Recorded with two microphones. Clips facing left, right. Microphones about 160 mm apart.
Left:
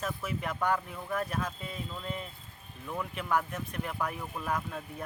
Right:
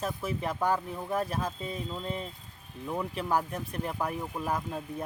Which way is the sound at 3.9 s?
20° right (ahead or behind).